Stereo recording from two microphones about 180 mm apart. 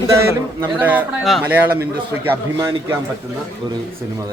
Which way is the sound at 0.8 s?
10° right (ahead or behind).